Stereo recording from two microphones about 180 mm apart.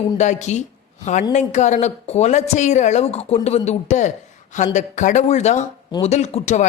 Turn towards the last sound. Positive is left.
turn(degrees=40)  # may be behind; listen again after turning